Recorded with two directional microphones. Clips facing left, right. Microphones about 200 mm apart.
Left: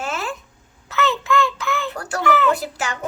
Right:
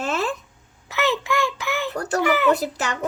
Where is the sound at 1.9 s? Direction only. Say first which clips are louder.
Even; 40° right (ahead or behind).